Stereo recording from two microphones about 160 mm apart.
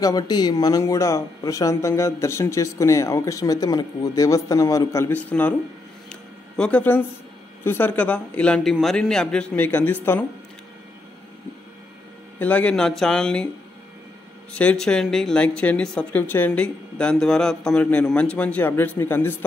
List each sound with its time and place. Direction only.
0.0 s speech: 25° left (ahead or behind); by 5.5 s 10° left (ahead or behind)
6.0 s a sound: 5° left (ahead or behind)
7.6 s speech: 15° left (ahead or behind)
12.4 s speech: 10° left (ahead or behind)
14.5 s speech: 5° left (ahead or behind)